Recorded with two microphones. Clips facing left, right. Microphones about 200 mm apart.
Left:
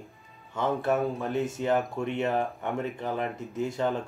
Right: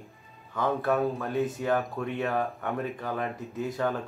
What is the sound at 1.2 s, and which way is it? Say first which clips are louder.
Speech: even; 20° left (ahead or behind).